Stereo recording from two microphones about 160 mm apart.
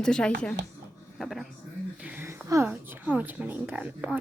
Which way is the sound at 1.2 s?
Centre (ahead or behind).